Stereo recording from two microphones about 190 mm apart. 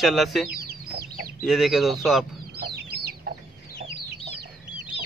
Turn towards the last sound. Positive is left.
turn(degrees=-55)  # may be behind; listen again after turning